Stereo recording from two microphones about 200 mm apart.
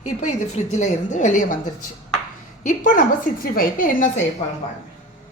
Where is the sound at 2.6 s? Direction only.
40° left (ahead or behind).